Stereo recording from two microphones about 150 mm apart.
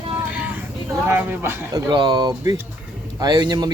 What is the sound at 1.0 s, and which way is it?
Speech, 15° right (ahead or behind).